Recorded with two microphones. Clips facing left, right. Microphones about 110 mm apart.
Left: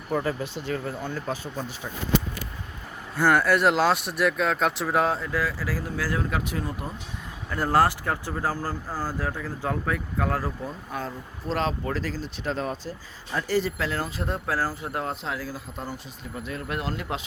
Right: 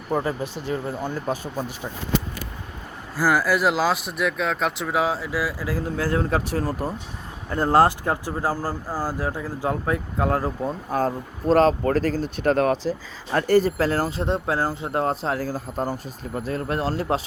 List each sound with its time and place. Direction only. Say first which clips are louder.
0.1 s speech: right 2 dB; 20° right (ahead or behind)
3.2 s speech: even; 5° right (ahead or behind); by 6.9 s 40° right (ahead or behind)
7.5 s speech: right 4 dB; 20° right (ahead or behind)
9.8 s speech: right 4 dB; 25° right (ahead or behind)
10.6 s speech: right 9 dB; 40° right (ahead or behind); by 13.4 s 85° right
13.5 s speech: right 7 dB; 45° right (ahead or behind); by 15.0 s 25° right (ahead or behind)
15.0 s speech: right 7 dB; 40° right (ahead or behind)